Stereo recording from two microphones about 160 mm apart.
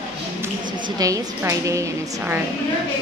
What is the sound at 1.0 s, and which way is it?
Speech, 20° right (ahead or behind).